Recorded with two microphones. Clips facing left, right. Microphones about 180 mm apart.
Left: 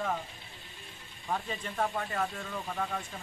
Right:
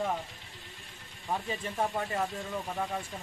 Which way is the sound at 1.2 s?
20° right (ahead or behind).